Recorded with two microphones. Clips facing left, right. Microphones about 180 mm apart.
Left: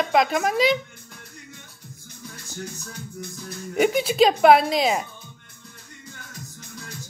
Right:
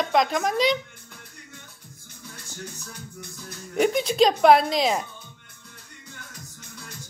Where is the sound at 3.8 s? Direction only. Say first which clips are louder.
Left 1 dB; 5° left (ahead or behind).